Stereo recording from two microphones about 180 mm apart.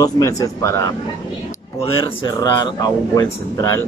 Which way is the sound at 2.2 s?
20° left (ahead or behind).